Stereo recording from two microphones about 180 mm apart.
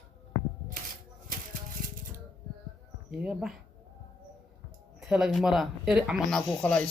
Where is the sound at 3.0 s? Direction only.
5° right (ahead or behind).